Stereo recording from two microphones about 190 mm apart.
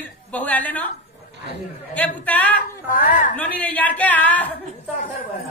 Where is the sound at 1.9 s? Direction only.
10° left (ahead or behind).